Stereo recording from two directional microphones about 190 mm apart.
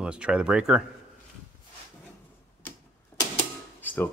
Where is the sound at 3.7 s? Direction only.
10° left (ahead or behind).